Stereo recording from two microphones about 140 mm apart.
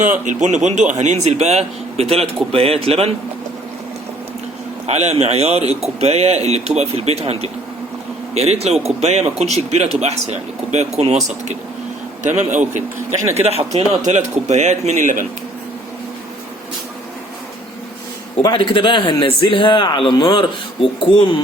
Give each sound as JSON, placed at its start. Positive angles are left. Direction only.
{"t": 0.0, "sound": "a man's voice", "side_deg": -60}
{"t": 4.9, "sound": "a man's voice", "side_deg": -50}
{"t": 13.3, "sound": "a man's voice", "side_deg": -50}
{"t": 18.4, "sound": "speech", "side_deg": 35}